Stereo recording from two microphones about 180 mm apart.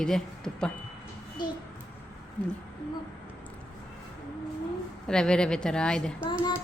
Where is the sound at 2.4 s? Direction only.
5° left (ahead or behind).